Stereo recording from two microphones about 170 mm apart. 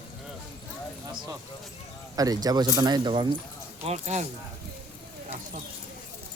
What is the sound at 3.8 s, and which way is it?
Speech, 40° right (ahead or behind).